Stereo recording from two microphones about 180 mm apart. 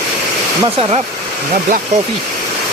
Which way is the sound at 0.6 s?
35° right (ahead or behind).